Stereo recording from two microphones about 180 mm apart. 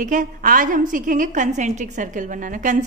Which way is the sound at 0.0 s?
45° right (ahead or behind).